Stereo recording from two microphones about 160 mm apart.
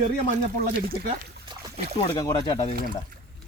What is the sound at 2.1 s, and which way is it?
Speech, 25° left (ahead or behind).